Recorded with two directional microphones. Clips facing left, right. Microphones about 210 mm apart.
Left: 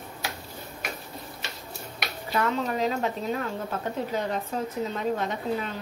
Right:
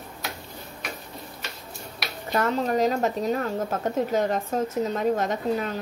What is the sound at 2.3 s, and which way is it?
A woman's voice, 40° right (ahead or behind).